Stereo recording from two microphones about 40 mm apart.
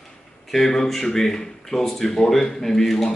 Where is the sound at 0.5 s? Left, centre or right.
Centre.